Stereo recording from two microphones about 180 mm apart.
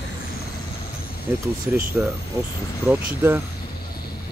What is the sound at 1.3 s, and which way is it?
Speech, 10° right (ahead or behind).